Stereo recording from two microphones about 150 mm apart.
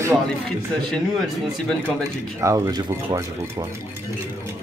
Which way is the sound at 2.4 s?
20° right (ahead or behind).